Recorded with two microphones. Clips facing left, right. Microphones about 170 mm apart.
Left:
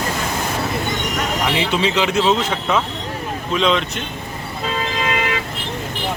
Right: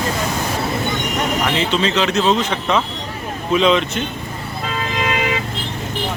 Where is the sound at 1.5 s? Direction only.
10° left (ahead or behind).